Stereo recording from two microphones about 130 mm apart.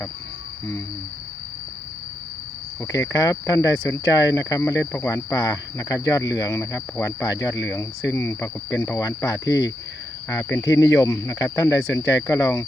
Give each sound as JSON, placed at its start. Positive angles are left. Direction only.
{"t": 2.8, "sound": "speech", "side_deg": 25}